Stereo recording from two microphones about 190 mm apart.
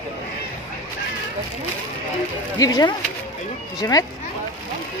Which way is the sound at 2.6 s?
20° left (ahead or behind).